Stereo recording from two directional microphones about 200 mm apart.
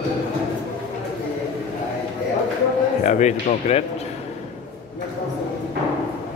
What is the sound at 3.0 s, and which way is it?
Speech, 35° left (ahead or behind).